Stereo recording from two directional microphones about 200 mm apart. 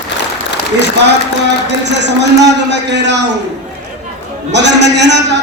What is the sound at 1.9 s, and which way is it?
A man's voice, 60° right (ahead or behind).